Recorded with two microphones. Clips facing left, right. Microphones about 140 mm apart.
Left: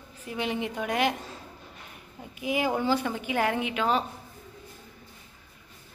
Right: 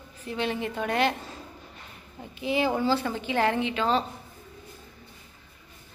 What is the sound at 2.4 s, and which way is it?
A woman's voice, 10° left (ahead or behind).